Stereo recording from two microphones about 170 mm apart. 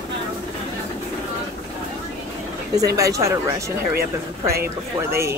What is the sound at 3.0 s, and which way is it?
Speech, 20° right (ahead or behind).